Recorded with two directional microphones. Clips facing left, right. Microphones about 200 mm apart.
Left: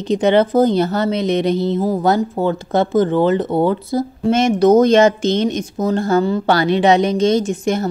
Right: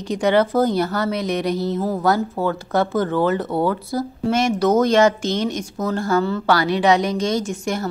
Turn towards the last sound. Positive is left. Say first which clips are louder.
# left 5 dB
turn(degrees=20)  # may be behind; listen again after turning